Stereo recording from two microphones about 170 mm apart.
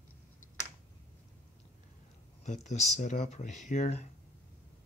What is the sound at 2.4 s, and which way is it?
Speech, 45° left (ahead or behind).